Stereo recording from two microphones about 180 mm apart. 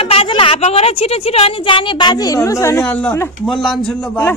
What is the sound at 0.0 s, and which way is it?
A woman's voice, 30° left (ahead or behind).